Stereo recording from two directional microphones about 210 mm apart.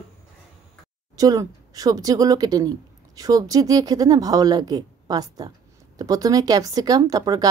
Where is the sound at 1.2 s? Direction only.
15° right (ahead or behind).